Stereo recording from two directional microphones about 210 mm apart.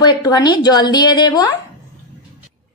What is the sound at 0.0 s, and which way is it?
A woman's voice, 20° left (ahead or behind).